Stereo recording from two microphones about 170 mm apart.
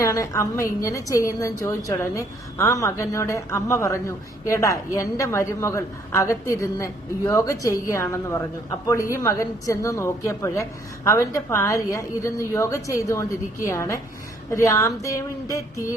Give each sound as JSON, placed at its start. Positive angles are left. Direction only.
{"t": 0.0, "sound": "a woman's voice", "side_deg": 20}
{"t": 15.4, "sound": "music", "side_deg": 20}